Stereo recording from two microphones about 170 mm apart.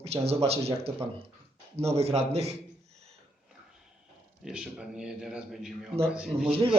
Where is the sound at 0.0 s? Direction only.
35° right (ahead or behind).